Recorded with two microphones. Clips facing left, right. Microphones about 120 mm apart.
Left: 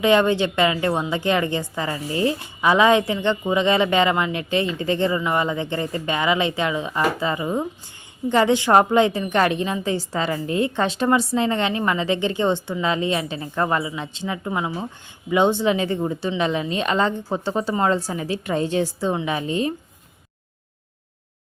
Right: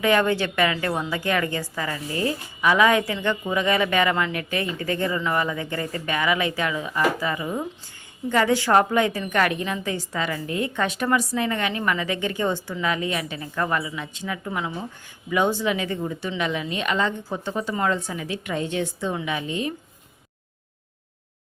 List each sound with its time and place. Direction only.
0.0 s a woman's voice: 20° left (ahead or behind)